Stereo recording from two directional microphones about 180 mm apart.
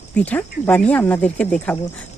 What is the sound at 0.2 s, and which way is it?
Speech, 10° left (ahead or behind).